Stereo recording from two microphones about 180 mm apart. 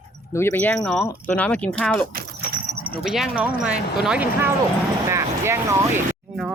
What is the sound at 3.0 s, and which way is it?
Speech, centre (ahead or behind).